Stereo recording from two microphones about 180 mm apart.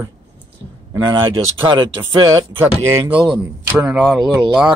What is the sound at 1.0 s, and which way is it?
Speech, 25° right (ahead or behind).